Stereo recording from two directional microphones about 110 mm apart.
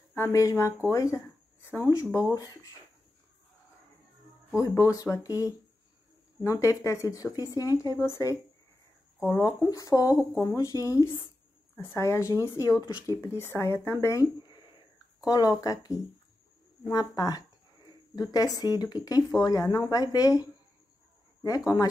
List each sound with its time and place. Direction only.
0.1 s speech: 25° left (ahead or behind)
1.6 s a sound: 20° left (ahead or behind)
4.6 s speech: 30° left (ahead or behind)
6.6 s speech: 30° left (ahead or behind)
14.4 s a sound: 45° left (ahead or behind)
15.6 s speech: 30° left (ahead or behind)